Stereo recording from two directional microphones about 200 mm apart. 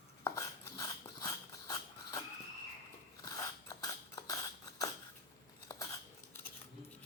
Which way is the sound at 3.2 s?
15° left (ahead or behind).